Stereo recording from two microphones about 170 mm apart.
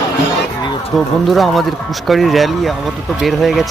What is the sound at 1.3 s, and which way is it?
Speech, centre (ahead or behind).